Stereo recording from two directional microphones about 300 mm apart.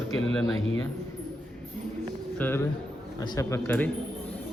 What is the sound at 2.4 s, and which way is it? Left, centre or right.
Speech, centre.